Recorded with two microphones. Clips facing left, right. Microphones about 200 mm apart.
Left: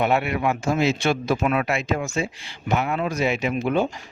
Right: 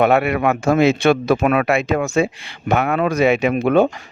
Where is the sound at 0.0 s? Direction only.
60° right (ahead or behind).